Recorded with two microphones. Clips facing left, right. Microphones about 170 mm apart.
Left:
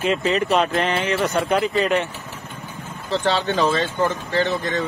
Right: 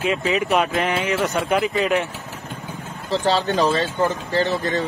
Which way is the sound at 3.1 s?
35° right (ahead or behind).